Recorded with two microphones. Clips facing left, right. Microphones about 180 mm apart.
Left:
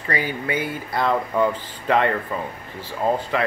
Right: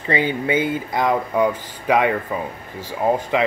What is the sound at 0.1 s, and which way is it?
Speech, 20° right (ahead or behind).